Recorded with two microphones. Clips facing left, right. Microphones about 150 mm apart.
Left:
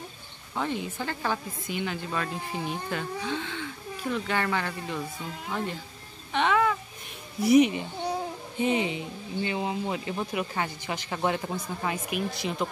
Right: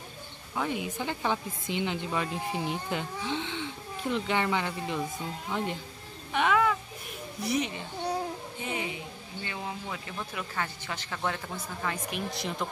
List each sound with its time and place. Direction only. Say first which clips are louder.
0.6 s speech: left 1 dB; 10° right (ahead or behind)
6.3 s a sound: left 1 dB; 5° right (ahead or behind)
7.4 s speech: left 11 dB; 15° left (ahead or behind)
12.3 s speech: left 3 dB; centre (ahead or behind)